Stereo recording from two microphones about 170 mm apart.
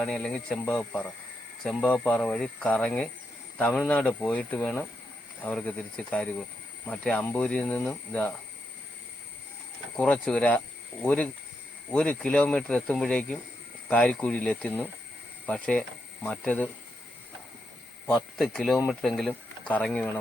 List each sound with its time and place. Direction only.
0.0 s speech: 5° left (ahead or behind)
10.0 s speech: 5° left (ahead or behind)
18.0 s speech: centre (ahead or behind)